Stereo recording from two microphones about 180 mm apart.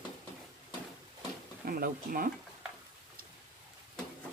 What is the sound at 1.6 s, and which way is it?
Speech, 55° right (ahead or behind).